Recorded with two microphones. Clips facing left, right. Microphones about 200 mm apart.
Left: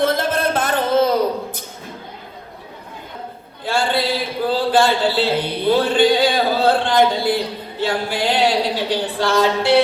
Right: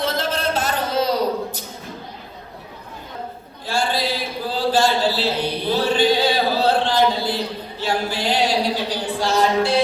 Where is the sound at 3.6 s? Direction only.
60° left (ahead or behind).